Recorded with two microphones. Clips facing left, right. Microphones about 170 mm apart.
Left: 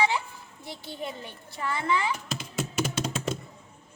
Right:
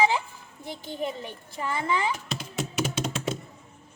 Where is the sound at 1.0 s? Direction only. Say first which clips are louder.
Right 6 dB; 15° right (ahead or behind).